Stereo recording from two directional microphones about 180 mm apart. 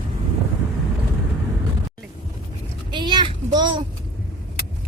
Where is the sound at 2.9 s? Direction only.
25° right (ahead or behind).